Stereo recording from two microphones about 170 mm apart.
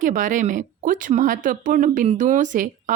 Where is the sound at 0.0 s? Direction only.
50° right (ahead or behind).